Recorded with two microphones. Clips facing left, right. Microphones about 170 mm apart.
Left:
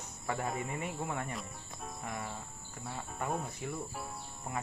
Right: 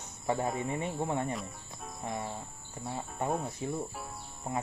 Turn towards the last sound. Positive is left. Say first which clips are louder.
# right 4 dB
turn(degrees=-25)  # may be behind; listen again after turning